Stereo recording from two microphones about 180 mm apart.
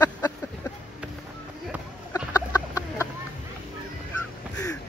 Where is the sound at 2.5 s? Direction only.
20° left (ahead or behind).